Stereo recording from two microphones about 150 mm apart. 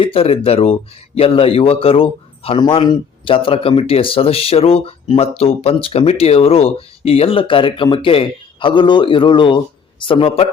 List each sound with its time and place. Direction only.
0.0 s a man's voice: 35° left (ahead or behind)